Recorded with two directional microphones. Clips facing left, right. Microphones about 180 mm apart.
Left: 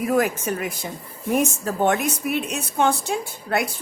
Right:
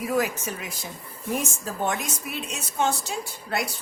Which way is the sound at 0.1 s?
50° left (ahead or behind).